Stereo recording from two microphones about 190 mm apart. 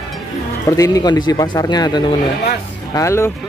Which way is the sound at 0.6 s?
20° left (ahead or behind).